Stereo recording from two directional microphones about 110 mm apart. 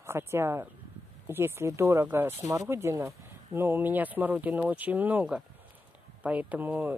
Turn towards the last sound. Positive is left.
turn(degrees=-15)  # may be behind; listen again after turning